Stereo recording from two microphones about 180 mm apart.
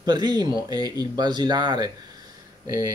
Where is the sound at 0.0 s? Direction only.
25° right (ahead or behind).